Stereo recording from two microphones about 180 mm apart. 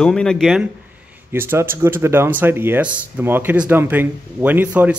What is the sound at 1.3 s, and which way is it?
Speech, 15° right (ahead or behind).